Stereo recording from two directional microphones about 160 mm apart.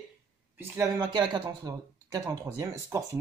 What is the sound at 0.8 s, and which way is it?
Speech, 25° right (ahead or behind).